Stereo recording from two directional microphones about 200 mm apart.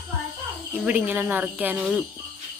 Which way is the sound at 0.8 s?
10° right (ahead or behind).